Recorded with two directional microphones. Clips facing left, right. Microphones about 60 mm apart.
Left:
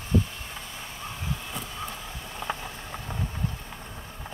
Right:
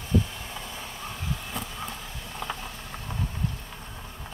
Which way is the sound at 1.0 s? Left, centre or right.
Centre.